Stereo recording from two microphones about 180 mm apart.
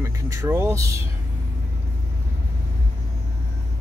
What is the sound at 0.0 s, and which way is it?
Speech, 15° right (ahead or behind).